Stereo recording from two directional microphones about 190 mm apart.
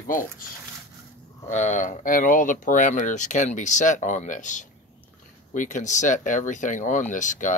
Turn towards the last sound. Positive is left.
turn(degrees=40)  # may be behind; listen again after turning